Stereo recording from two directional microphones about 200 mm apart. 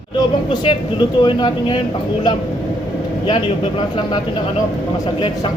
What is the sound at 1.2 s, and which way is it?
Speech, 25° left (ahead or behind).